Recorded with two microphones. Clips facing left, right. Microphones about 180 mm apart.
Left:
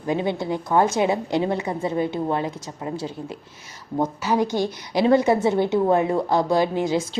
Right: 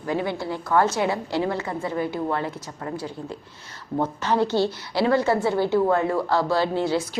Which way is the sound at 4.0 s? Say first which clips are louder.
Left 1 dB; 10° left (ahead or behind).